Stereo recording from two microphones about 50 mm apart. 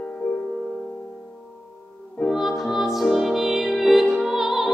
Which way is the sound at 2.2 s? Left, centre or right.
Centre.